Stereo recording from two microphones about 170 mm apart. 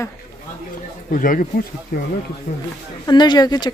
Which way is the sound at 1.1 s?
55° left (ahead or behind).